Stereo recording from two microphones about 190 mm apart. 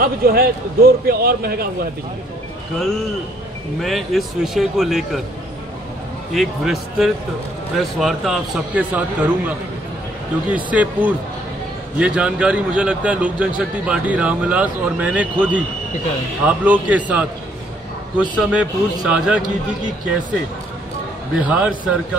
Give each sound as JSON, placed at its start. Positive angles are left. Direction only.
{"t": 0.0, "sound": "a man's voice", "side_deg": -50}
{"t": 3.8, "sound": "a man's voice", "side_deg": 0}
{"t": 6.3, "sound": "a man's voice", "side_deg": 0}
{"t": 10.5, "sound": "a man's voice", "side_deg": -5}
{"t": 21.5, "sound": "a man's voice", "side_deg": -5}